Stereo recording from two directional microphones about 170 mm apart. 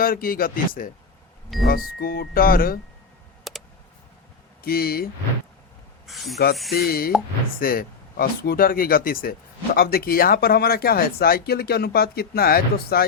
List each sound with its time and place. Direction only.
0.0 s speech: 60° left (ahead or behind)
3.5 s a sound: centre (ahead or behind)
4.6 s speech: 65° left (ahead or behind)
6.1 s speech: centre (ahead or behind)
6.7 s speech: 60° left (ahead or behind)